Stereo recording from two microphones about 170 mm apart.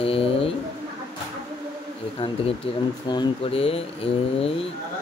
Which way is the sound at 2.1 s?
30° left (ahead or behind).